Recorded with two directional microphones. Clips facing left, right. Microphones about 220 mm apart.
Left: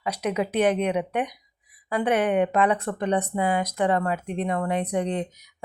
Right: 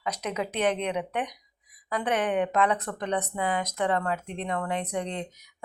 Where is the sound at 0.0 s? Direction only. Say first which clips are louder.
Left 5 dB; 10° left (ahead or behind).